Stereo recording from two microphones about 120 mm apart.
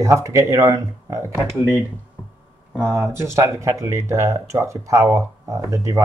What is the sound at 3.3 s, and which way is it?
Speech, 25° right (ahead or behind).